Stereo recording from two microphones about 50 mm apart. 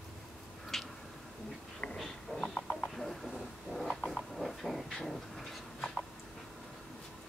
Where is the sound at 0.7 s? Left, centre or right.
Centre.